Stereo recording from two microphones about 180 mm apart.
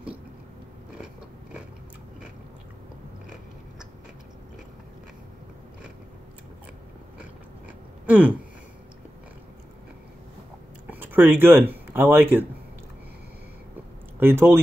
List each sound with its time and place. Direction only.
7.6 s a sound: 10° right (ahead or behind)
10.9 s speech: 10° right (ahead or behind)
14.2 s speech: 10° right (ahead or behind)